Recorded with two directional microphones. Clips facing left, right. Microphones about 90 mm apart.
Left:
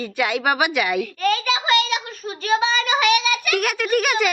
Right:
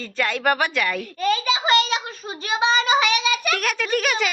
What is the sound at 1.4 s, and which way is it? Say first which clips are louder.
Child singing: even; 30° right (ahead or behind).